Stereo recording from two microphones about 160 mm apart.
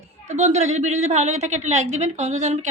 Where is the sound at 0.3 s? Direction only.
45° right (ahead or behind).